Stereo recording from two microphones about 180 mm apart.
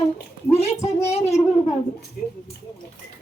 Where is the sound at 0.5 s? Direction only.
35° left (ahead or behind).